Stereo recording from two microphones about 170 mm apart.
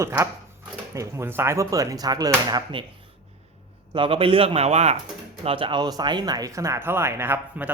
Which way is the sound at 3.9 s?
30° right (ahead or behind).